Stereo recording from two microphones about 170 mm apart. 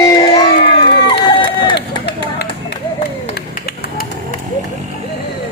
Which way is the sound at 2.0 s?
75° left (ahead or behind).